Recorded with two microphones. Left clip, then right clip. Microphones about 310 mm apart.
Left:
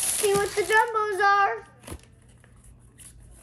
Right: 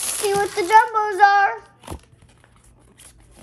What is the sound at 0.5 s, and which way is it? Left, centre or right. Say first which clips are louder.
Speech: right 7 dB; right.